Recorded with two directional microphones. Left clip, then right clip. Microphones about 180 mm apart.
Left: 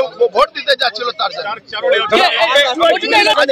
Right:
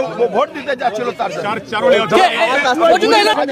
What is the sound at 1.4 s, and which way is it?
Speech, 70° right (ahead or behind).